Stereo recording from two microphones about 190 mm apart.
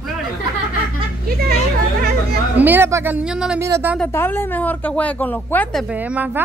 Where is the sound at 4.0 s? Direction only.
10° left (ahead or behind).